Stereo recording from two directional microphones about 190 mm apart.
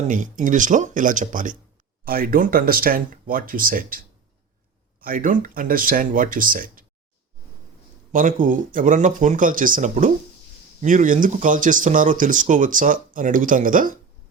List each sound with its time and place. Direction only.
0.1 s speech: 45° right (ahead or behind)
8.1 s speech: 45° right (ahead or behind)